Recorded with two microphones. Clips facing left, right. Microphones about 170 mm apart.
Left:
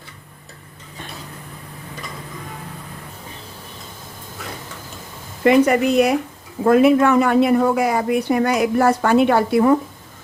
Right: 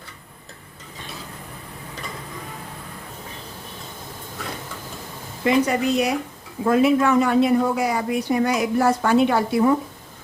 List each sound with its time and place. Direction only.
5.4 s speech: 60° left (ahead or behind)